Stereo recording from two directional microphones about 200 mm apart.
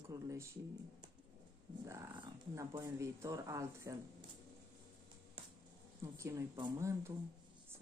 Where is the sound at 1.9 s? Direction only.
15° right (ahead or behind).